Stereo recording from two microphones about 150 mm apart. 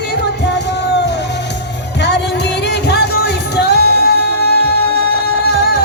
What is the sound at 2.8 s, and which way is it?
Music, 90° left.